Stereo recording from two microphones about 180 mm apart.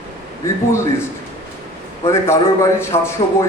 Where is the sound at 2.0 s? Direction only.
15° left (ahead or behind).